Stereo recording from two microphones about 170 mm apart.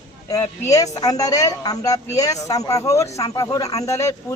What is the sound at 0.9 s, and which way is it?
A man's voice, 20° left (ahead or behind).